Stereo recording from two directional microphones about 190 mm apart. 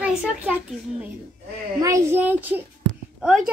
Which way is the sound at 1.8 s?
15° right (ahead or behind).